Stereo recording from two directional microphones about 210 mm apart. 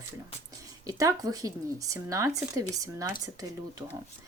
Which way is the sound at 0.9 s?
15° right (ahead or behind).